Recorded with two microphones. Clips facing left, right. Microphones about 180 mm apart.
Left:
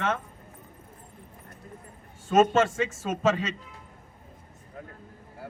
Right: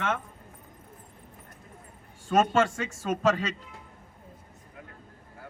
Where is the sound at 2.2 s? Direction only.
5° left (ahead or behind).